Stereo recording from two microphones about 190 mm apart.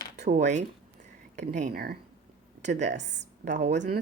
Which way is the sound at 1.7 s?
55° right (ahead or behind).